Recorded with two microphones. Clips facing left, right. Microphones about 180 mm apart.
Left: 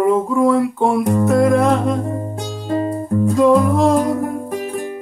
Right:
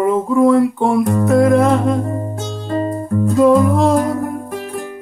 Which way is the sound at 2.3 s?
15° left (ahead or behind).